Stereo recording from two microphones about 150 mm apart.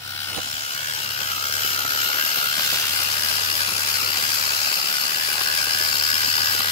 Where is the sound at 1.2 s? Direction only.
40° left (ahead or behind).